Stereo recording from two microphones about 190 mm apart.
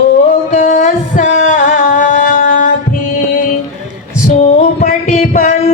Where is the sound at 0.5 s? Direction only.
40° left (ahead or behind).